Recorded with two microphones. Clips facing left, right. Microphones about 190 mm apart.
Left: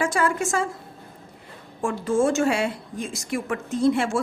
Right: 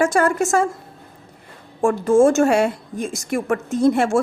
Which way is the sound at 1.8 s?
45° right (ahead or behind).